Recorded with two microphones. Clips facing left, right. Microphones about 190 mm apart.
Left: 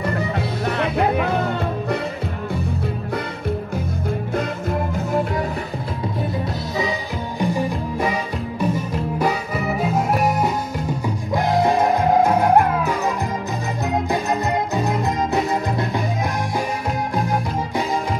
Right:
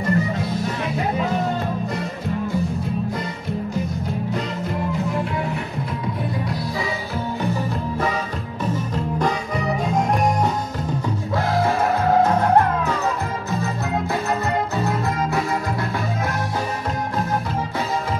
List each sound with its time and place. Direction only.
0.0 s music: 65° left (ahead or behind)
7.3 s music: 15° left (ahead or behind)